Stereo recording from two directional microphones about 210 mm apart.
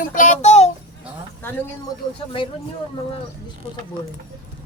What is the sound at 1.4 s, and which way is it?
Speech, 10° left (ahead or behind).